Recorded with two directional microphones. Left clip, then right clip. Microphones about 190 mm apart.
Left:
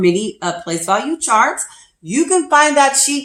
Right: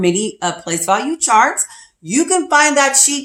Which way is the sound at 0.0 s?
35° right (ahead or behind).